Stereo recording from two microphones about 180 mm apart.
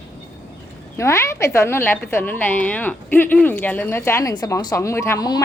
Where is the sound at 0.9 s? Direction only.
15° left (ahead or behind).